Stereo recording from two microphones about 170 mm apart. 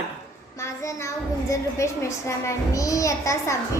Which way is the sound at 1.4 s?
20° left (ahead or behind).